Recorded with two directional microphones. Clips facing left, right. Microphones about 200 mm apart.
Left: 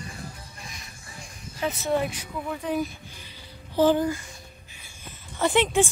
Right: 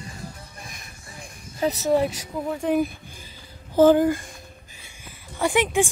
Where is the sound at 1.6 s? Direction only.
35° right (ahead or behind).